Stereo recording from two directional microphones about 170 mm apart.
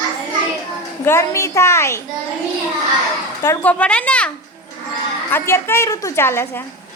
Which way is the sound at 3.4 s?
15° left (ahead or behind).